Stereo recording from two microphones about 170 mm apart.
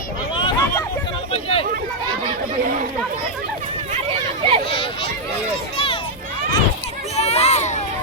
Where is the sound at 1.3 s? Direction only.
35° left (ahead or behind).